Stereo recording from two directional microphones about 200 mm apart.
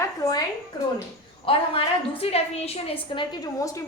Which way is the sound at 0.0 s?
20° left (ahead or behind).